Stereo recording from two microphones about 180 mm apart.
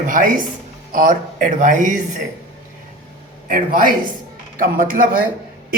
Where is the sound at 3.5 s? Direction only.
50° right (ahead or behind).